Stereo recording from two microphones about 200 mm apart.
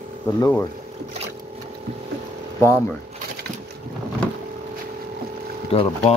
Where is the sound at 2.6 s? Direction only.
10° left (ahead or behind).